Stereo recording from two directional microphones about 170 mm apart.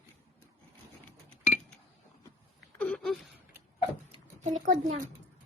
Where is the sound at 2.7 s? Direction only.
5° left (ahead or behind).